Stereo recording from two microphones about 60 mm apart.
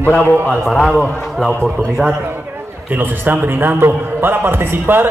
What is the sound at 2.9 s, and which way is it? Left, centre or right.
A man's voice, right.